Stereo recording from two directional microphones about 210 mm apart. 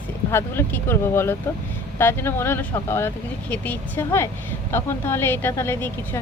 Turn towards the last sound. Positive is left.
turn(degrees=10)  # may be behind; listen again after turning